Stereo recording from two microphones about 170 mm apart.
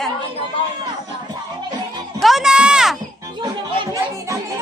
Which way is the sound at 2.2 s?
Centre (ahead or behind).